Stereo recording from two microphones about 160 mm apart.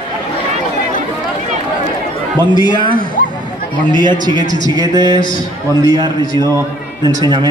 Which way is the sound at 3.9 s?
30° right (ahead or behind).